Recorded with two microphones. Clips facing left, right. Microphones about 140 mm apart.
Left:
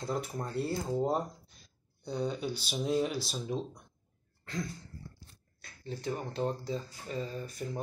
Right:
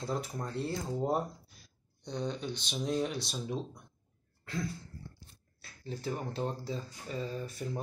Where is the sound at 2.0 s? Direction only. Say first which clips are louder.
Left 3 dB; 10° left (ahead or behind).